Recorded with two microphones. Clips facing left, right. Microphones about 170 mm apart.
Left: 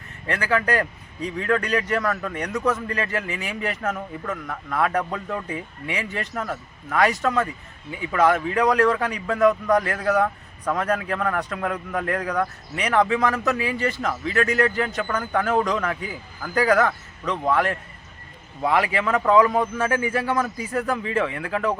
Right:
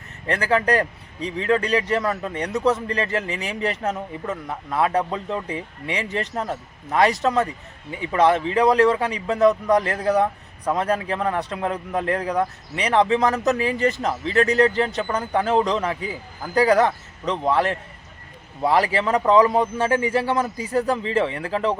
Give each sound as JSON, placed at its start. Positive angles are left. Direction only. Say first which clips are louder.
{"t": 0.3, "sound": "a man's voice", "louder": "right 3 dB", "side_deg": -35}